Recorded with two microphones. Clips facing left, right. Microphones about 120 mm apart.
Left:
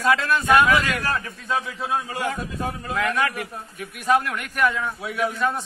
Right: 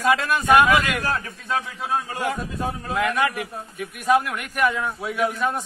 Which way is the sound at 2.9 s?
5° right (ahead or behind).